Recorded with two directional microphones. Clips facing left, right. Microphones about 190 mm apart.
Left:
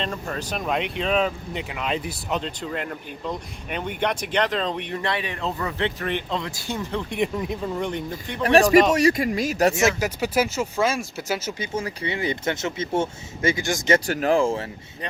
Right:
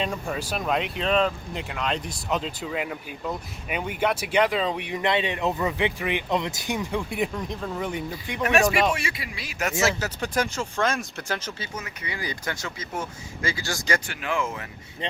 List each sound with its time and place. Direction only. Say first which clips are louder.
0.0 s speech: right 1 dB; 10° right (ahead or behind)
8.4 s speech: left 6 dB; 35° left (ahead or behind)
9.8 s speech: left 4 dB; 10° left (ahead or behind)
11.6 s speech: left 8 dB; 30° left (ahead or behind)
14.1 s speech: left 9 dB; 40° left (ahead or behind)